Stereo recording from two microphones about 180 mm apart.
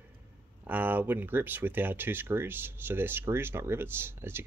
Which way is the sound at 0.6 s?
10° right (ahead or behind).